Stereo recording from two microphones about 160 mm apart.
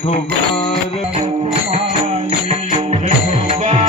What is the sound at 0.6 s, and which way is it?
Music, 40° left (ahead or behind).